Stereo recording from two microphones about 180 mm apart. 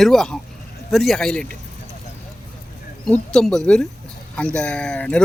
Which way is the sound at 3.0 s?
5° left (ahead or behind).